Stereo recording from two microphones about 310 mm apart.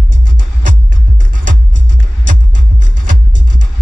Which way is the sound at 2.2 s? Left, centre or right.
Right.